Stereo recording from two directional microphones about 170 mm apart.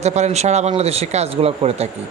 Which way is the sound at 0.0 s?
40° right (ahead or behind).